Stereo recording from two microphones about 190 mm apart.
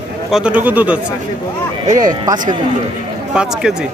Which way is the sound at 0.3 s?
5° right (ahead or behind).